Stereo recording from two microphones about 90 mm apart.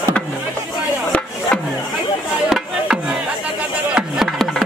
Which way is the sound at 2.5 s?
5° right (ahead or behind).